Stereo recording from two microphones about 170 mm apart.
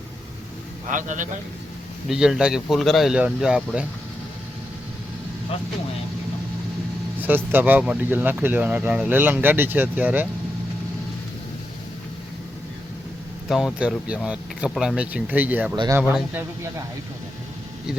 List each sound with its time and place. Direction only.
0.9 s a man's voice: 50° right (ahead or behind)
2.0 s speech: 5° right (ahead or behind)
7.2 s speech: 10° right (ahead or behind)
13.5 s speech: centre (ahead or behind)
15.7 s speech: 25° right (ahead or behind)
16.0 s speech: 10° right (ahead or behind)